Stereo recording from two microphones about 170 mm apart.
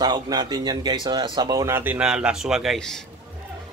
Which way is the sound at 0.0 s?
25° right (ahead or behind).